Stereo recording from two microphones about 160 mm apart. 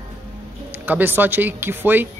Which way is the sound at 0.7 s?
10° right (ahead or behind).